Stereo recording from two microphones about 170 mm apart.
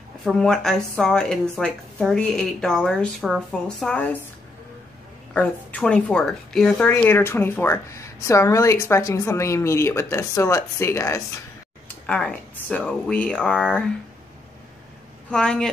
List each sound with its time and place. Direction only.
0.2 s a woman's voice: 5° left (ahead or behind)
5.3 s a woman's voice: 10° left (ahead or behind)
15.3 s speech: 5° left (ahead or behind)